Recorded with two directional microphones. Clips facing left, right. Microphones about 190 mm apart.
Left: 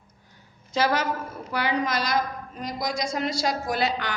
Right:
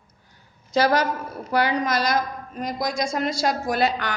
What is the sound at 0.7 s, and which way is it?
A woman's voice, 40° right (ahead or behind).